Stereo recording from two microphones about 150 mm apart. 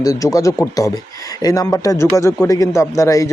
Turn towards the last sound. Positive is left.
turn(degrees=20)  # may be behind; listen again after turning